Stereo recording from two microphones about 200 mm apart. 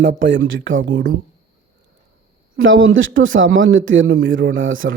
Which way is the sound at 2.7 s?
80° right.